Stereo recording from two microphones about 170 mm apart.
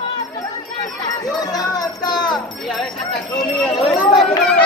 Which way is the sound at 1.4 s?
20° left (ahead or behind).